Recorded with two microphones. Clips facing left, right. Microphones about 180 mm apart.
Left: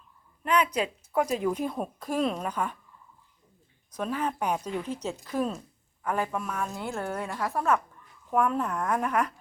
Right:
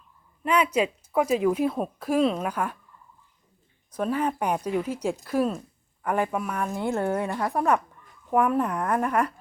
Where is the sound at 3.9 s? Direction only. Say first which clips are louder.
Right 4 dB; 10° right (ahead or behind).